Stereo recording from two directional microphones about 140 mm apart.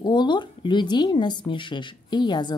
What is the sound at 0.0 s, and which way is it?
A woman's voice, 30° left (ahead or behind).